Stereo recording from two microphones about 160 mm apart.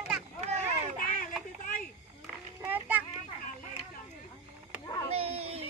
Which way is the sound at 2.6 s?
10° right (ahead or behind).